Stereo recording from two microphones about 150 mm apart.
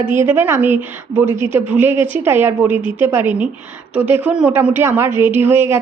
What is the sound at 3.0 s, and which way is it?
A woman's voice, 15° right (ahead or behind).